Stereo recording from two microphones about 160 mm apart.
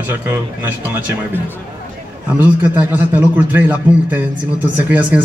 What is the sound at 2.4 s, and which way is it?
A man's voice, 10° right (ahead or behind).